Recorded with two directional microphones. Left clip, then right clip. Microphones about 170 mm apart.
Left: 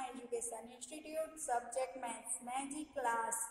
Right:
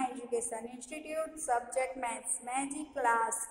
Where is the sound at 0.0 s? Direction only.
25° right (ahead or behind).